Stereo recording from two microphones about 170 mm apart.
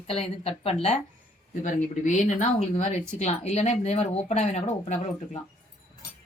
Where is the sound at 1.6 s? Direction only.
50° left (ahead or behind).